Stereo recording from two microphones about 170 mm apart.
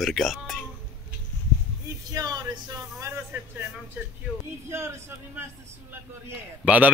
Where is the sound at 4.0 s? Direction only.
10° right (ahead or behind).